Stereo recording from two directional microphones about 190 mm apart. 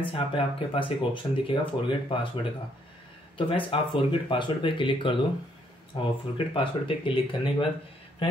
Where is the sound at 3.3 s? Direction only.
25° left (ahead or behind).